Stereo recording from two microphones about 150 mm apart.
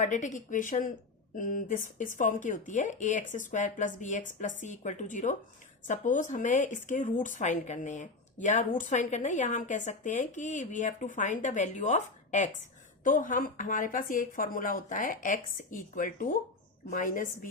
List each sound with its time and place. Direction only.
0.0 s speech: 55° left (ahead or behind)